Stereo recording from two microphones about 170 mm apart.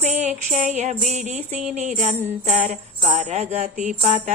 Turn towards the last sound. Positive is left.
turn(degrees=-45)  # may be behind; listen again after turning